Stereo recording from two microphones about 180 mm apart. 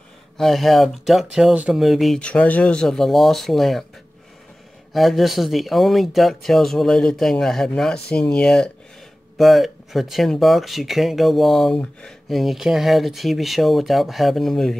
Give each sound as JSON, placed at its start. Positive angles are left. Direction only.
{"t": 0.4, "sound": "speech", "side_deg": 0}
{"t": 4.9, "sound": "speech", "side_deg": 0}